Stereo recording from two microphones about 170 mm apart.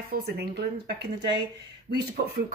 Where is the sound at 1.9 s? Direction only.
70° right (ahead or behind).